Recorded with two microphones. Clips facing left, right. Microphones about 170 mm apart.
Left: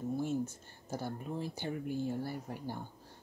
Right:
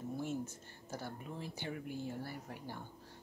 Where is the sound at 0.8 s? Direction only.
35° left (ahead or behind).